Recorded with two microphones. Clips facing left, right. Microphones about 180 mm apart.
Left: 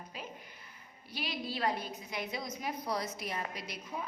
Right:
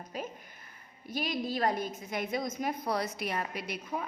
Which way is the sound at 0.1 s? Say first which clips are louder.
Right 8 dB; 45° right (ahead or behind).